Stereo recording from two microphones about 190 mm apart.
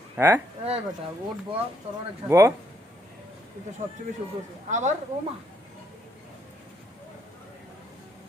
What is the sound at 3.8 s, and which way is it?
Speech, 35° right (ahead or behind).